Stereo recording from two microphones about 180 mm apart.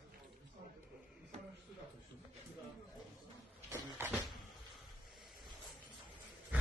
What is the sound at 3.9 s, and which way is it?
Cupboard open or close, 10° right (ahead or behind).